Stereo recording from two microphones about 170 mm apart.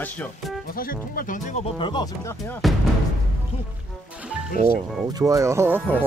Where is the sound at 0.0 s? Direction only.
10° left (ahead or behind).